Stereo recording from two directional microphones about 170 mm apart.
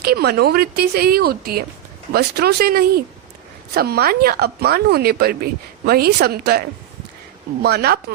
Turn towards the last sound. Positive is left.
turn(degrees=-70)  # may be behind; listen again after turning